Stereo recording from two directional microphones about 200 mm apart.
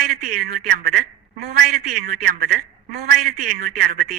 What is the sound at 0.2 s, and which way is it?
A man's voice, 40° right (ahead or behind).